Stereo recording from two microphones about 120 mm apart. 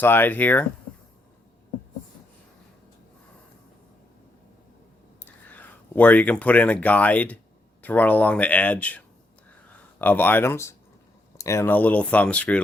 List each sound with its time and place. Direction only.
0.0 s speech: 15° left (ahead or behind)
5.2 s speech: 15° left (ahead or behind)